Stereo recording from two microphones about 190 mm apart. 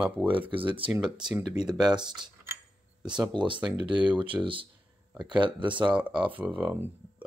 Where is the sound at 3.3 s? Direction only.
25° right (ahead or behind).